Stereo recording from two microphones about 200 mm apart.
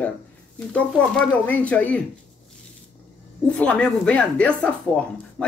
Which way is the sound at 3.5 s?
5° left (ahead or behind).